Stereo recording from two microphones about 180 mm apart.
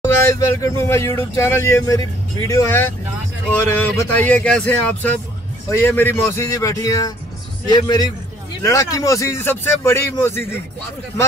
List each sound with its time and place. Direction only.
0.0 s a man's voice: 15° left (ahead or behind)